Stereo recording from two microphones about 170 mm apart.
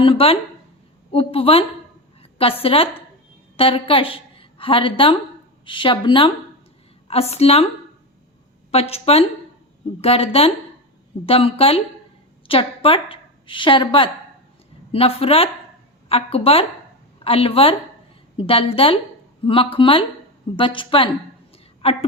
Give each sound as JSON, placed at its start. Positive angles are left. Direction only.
{"t": 0.0, "sound": "a woman's voice", "side_deg": 35}
{"t": 8.7, "sound": "a woman's voice", "side_deg": 35}
{"t": 21.5, "sound": "a sound", "side_deg": 35}